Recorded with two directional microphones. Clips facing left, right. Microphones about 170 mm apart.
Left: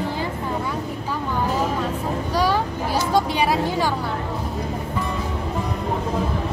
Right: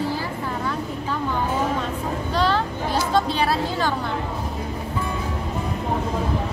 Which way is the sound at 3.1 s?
15° left (ahead or behind).